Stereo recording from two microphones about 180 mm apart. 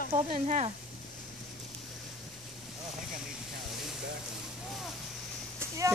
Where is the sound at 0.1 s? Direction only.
40° right (ahead or behind).